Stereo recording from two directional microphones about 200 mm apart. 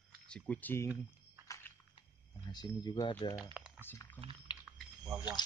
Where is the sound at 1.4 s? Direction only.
15° left (ahead or behind).